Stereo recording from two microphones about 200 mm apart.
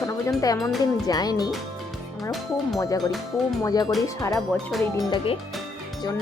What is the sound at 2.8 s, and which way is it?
Speech, 20° left (ahead or behind).